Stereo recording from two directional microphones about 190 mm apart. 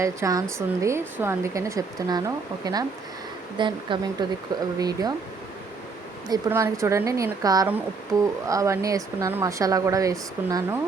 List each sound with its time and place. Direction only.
0.0 s speech: 15° right (ahead or behind)
6.2 s speech: 20° right (ahead or behind)